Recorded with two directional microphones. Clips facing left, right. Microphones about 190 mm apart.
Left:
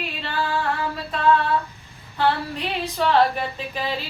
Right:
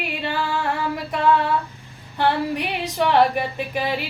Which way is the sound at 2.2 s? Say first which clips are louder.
Right 2 dB; 15° right (ahead or behind).